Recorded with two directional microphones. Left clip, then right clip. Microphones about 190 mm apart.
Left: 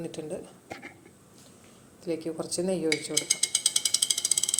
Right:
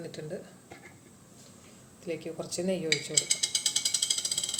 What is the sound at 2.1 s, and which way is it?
Speech, 25° left (ahead or behind).